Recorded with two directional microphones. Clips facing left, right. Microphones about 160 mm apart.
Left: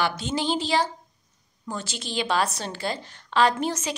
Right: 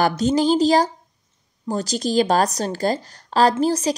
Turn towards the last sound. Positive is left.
turn(degrees=-35)  # may be behind; listen again after turning